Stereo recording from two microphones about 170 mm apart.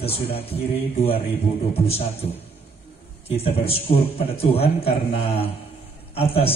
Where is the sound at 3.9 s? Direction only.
35° left (ahead or behind).